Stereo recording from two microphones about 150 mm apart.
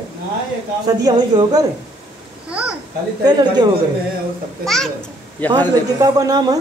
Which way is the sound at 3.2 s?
30° right (ahead or behind).